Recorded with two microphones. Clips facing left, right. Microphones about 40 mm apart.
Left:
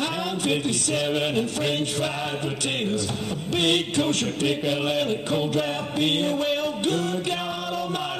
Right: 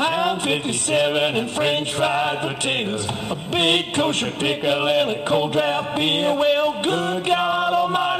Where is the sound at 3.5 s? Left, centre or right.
Right.